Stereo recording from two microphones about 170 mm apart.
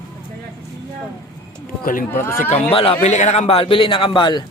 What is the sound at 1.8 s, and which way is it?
Speech, 55° left (ahead or behind).